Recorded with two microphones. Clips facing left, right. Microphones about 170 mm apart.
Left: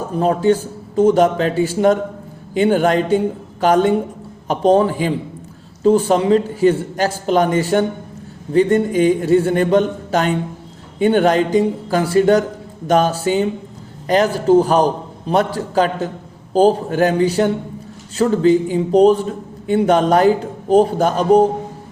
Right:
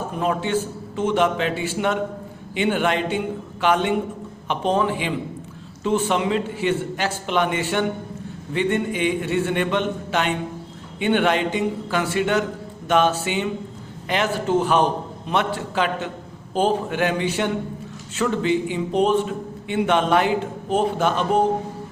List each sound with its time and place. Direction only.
0.1 s a man's voice: 35° left (ahead or behind)